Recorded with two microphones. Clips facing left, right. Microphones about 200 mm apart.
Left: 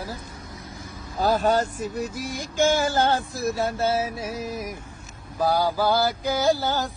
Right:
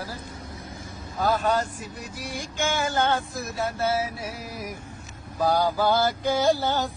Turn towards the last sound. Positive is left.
turn(degrees=0)  # may be behind; listen again after turning